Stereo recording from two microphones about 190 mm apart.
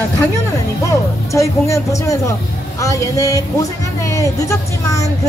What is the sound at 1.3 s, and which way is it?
Speech, 15° left (ahead or behind).